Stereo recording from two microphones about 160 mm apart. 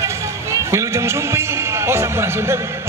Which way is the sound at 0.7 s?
15° right (ahead or behind).